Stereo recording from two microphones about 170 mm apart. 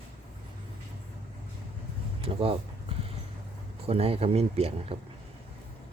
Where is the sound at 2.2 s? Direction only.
35° right (ahead or behind).